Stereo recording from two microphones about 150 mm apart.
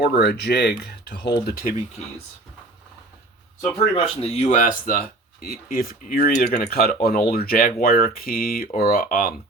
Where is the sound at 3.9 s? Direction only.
45° left (ahead or behind); by 9.3 s 70° left (ahead or behind).